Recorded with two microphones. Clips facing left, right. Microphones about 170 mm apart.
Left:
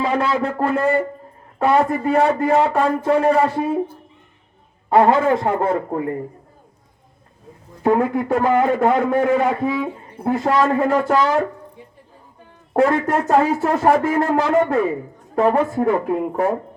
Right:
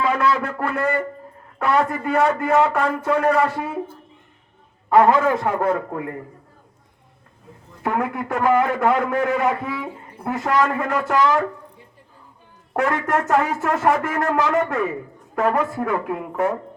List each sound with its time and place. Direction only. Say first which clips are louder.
0.0 s a man's voice: left 1 dB; 25° left (ahead or behind)
4.9 s a man's voice: left 1 dB; 30° left (ahead or behind)
7.8 s a man's voice: left 6 dB; 30° left (ahead or behind)
12.7 s a man's voice: left 4 dB; 30° left (ahead or behind)